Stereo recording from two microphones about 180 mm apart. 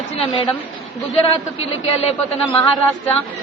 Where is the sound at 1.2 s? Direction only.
35° left (ahead or behind).